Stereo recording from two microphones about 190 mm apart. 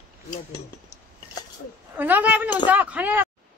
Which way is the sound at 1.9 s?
10° right (ahead or behind).